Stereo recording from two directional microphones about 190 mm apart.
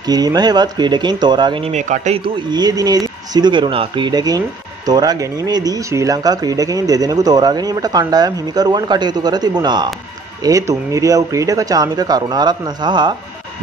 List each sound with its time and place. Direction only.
0.0 s speech: 20° right (ahead or behind)